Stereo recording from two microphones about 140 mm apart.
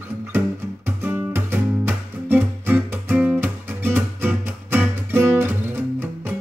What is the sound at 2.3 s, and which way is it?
Music, 15° right (ahead or behind).